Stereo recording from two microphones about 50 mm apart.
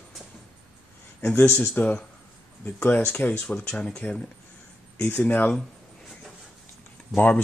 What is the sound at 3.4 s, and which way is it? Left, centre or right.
Speech, centre.